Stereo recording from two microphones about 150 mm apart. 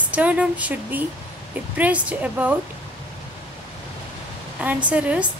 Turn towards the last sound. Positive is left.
turn(degrees=-10)  # may be behind; listen again after turning